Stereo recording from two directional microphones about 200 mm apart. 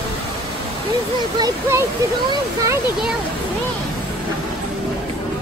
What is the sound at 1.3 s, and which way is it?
Speech, 20° right (ahead or behind).